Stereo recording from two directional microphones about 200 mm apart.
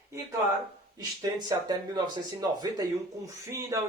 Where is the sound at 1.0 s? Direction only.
20° right (ahead or behind).